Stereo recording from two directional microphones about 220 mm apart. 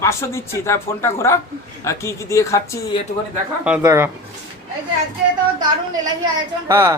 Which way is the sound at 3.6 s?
10° right (ahead or behind).